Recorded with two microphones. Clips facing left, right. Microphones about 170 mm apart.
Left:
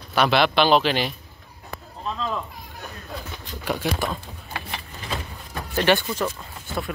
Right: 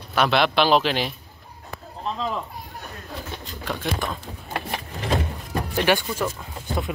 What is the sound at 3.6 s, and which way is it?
Speech, 10° left (ahead or behind).